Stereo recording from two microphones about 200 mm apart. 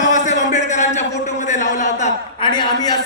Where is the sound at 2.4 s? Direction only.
20° left (ahead or behind).